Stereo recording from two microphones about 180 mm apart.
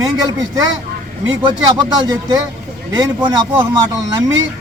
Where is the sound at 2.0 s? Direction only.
20° right (ahead or behind).